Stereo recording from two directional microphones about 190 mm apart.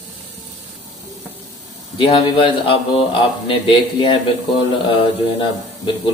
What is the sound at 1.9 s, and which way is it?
Speech, 25° left (ahead or behind).